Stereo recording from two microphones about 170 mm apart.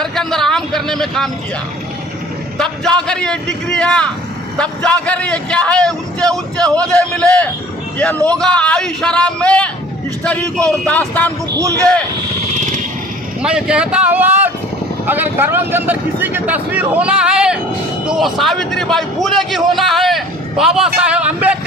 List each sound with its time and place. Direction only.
0.0 s a sound: 5° left (ahead or behind)
2.6 s a man's voice: 5° left (ahead or behind)
12.5 s vehicle: 45° right (ahead or behind)
13.4 s a man's voice: 5° right (ahead or behind)